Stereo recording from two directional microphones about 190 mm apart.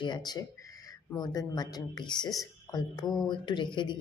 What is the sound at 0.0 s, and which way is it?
Speech, 20° left (ahead or behind).